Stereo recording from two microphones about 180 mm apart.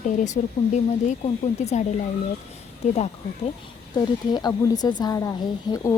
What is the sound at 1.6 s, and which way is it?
Speech, 40° left (ahead or behind).